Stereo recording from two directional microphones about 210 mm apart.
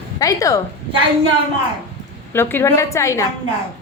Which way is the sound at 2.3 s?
10° left (ahead or behind).